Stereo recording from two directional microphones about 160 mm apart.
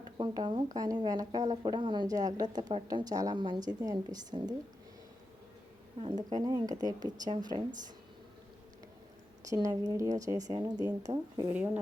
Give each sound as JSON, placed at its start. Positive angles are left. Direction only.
{"t": 0.2, "sound": "speech", "side_deg": -30}
{"t": 6.0, "sound": "speech", "side_deg": -30}
{"t": 9.5, "sound": "speech", "side_deg": -20}
{"t": 11.5, "sound": "speech", "side_deg": -10}